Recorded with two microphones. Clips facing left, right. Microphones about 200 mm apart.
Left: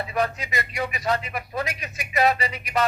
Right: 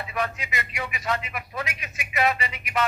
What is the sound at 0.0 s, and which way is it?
Speech, 35° left (ahead or behind).